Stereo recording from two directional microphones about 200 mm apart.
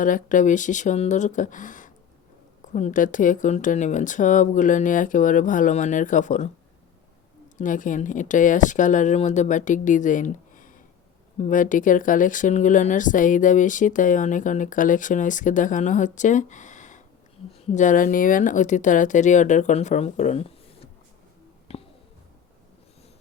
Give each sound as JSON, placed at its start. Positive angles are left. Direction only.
{"t": 0.0, "sound": "speech", "side_deg": 40}
{"t": 7.6, "sound": "speech", "side_deg": 40}
{"t": 21.7, "sound": "a sound", "side_deg": 30}